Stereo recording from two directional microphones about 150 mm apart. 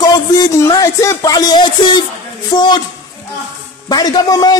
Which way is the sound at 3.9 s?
25° left (ahead or behind).